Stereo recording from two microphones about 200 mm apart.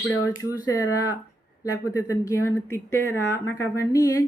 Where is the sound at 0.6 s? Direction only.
15° left (ahead or behind).